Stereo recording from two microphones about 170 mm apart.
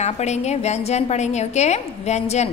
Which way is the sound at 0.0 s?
40° left (ahead or behind).